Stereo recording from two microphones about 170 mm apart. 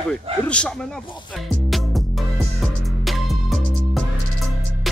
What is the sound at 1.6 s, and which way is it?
Music, centre (ahead or behind).